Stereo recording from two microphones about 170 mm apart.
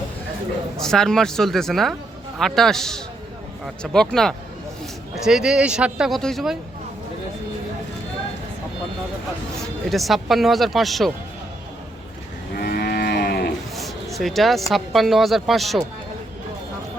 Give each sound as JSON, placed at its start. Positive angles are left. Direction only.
{"t": 0.8, "sound": "speech", "side_deg": 5}
{"t": 9.6, "sound": "speech", "side_deg": 0}
{"t": 12.5, "sound": "livestock", "side_deg": 65}
{"t": 13.7, "sound": "speech", "side_deg": 0}